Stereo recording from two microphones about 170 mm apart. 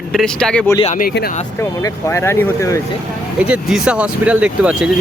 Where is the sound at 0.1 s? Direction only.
Centre (ahead or behind).